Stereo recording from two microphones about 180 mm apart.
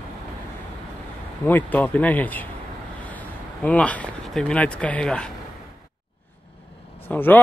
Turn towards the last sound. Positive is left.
turn(degrees=10)  # may be behind; listen again after turning